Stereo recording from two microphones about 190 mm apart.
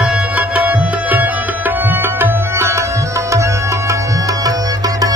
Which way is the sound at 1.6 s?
10° right (ahead or behind).